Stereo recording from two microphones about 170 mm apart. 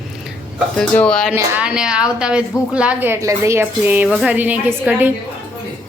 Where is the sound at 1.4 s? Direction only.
10° right (ahead or behind).